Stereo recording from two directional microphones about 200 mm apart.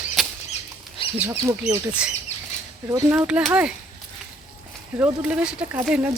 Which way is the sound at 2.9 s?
15° right (ahead or behind).